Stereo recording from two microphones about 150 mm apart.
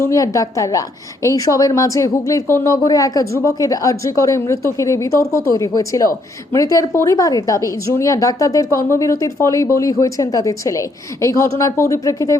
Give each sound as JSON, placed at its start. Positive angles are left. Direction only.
{"t": 0.0, "sound": "a woman's voice", "side_deg": 20}